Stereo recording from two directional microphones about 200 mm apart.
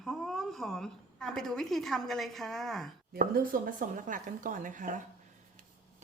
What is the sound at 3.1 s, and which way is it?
Speech, 45° right (ahead or behind).